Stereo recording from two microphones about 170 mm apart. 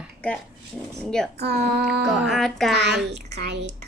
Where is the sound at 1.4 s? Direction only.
75° right (ahead or behind).